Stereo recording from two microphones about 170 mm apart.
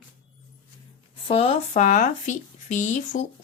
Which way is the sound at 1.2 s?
35° left (ahead or behind).